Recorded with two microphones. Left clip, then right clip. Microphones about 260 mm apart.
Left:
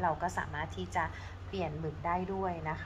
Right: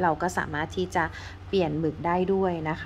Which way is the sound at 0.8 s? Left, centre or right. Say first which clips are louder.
Right 8 dB; right.